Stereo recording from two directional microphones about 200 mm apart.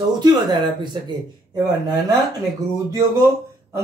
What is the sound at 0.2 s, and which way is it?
Speech, 20° right (ahead or behind).